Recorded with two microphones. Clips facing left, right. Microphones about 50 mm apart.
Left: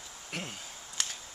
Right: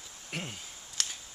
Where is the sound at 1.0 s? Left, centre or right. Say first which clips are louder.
Even; centre.